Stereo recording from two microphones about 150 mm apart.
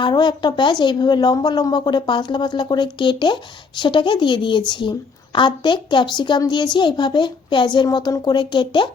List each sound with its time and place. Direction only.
0.0 s speech: 30° left (ahead or behind)